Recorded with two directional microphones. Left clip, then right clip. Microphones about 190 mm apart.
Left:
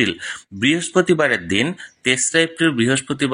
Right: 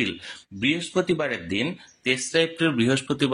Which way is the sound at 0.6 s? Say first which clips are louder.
Left 7 dB; 30° left (ahead or behind).